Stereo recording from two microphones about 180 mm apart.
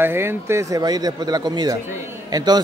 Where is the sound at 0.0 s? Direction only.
10° right (ahead or behind).